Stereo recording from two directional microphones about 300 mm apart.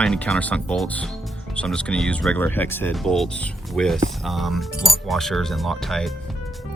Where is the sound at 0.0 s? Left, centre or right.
Centre.